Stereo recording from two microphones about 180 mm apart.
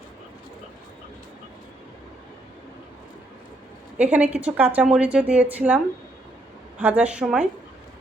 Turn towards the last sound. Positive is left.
turn(degrees=-5)  # may be behind; listen again after turning